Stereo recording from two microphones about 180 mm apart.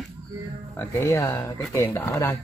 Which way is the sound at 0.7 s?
15° left (ahead or behind).